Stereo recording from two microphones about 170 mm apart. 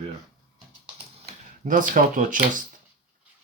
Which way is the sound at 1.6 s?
50° right (ahead or behind).